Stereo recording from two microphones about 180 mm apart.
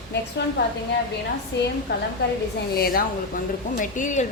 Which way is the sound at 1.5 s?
75° left (ahead or behind).